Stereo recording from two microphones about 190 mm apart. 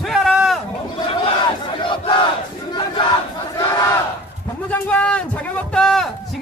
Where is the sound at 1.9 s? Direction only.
25° left (ahead or behind).